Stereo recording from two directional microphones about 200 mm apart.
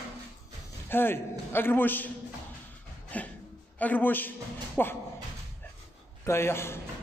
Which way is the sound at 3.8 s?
10° left (ahead or behind).